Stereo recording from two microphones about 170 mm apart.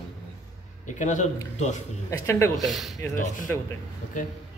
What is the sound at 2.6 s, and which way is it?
Speech, centre (ahead or behind).